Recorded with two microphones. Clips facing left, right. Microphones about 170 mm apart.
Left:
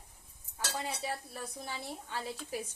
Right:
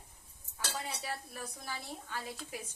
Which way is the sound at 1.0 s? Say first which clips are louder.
Left 3 dB; 25° left (ahead or behind).